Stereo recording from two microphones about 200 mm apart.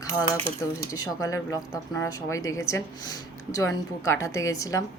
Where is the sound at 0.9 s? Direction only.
15° left (ahead or behind).